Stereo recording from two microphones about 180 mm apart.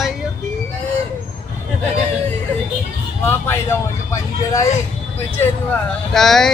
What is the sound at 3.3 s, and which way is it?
Speech, 15° left (ahead or behind).